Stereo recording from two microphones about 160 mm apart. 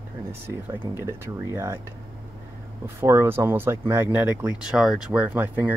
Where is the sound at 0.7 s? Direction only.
15° right (ahead or behind).